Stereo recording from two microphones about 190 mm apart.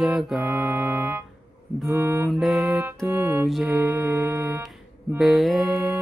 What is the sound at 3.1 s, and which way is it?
Music, 10° right (ahead or behind).